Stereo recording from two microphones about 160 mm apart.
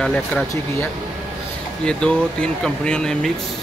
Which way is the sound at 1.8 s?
5° left (ahead or behind).